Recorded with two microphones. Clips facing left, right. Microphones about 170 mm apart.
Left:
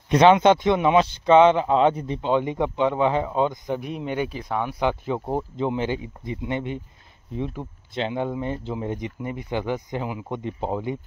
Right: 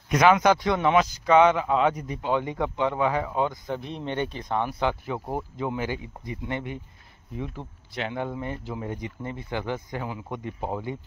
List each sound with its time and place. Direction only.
0.1 s speech: 30° left (ahead or behind)